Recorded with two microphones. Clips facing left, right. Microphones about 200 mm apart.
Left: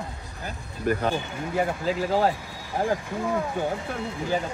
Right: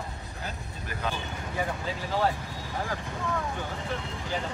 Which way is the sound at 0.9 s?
50° left (ahead or behind).